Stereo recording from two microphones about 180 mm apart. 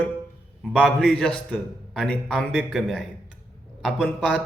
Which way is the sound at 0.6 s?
5° left (ahead or behind).